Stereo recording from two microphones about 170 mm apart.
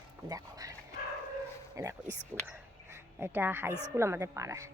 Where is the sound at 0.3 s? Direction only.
20° right (ahead or behind).